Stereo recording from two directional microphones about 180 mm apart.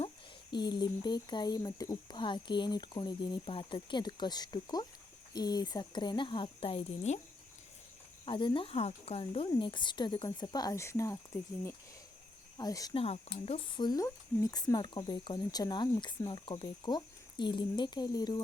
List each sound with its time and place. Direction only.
0.5 s speech: 25° left (ahead or behind)
8.2 s speech: 30° left (ahead or behind)
12.5 s speech: 20° left (ahead or behind)
13.0 s speech: 35° left (ahead or behind)